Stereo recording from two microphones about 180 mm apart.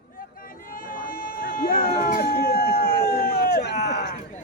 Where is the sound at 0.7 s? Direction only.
50° left (ahead or behind); by 4.1 s 70° left (ahead or behind).